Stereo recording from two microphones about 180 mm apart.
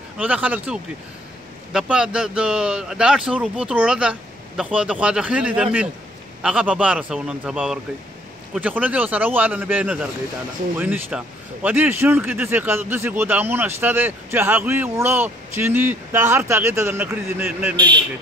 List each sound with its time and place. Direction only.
0.2 s a man's voice: 10° right (ahead or behind)
17.7 s a man's voice: 25° right (ahead or behind)